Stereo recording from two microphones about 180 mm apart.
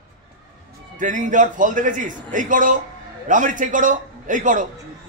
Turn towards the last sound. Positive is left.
turn(degrees=-45)  # may be behind; listen again after turning